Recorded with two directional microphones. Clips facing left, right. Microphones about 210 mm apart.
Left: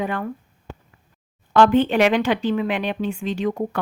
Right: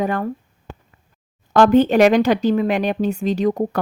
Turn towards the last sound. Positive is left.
turn(degrees=-40)  # may be behind; listen again after turning